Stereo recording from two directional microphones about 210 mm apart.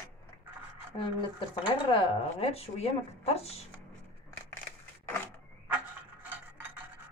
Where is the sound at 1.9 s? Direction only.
25° left (ahead or behind).